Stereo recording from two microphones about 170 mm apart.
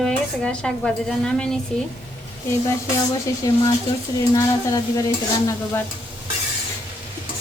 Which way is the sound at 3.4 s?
20° left (ahead or behind).